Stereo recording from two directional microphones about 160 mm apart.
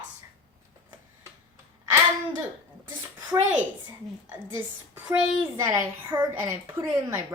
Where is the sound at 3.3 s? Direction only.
10° right (ahead or behind).